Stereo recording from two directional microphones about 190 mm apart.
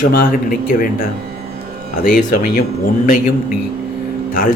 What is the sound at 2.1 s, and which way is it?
Speech, 45° left (ahead or behind).